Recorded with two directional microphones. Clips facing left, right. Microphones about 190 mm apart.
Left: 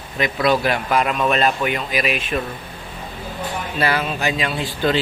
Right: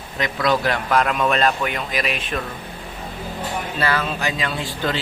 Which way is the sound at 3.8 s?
15° left (ahead or behind).